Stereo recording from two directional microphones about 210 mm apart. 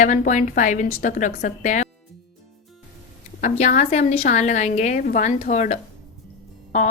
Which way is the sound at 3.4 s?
35° left (ahead or behind).